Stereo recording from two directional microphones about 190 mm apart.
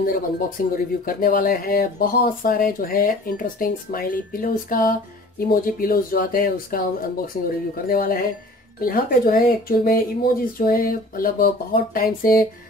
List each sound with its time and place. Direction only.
0.0 s speech: 50° left (ahead or behind)